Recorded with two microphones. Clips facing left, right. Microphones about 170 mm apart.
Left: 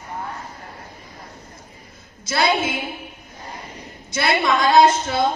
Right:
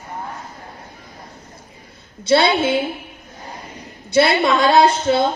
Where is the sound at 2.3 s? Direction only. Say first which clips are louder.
Right 5 dB; 30° right (ahead or behind).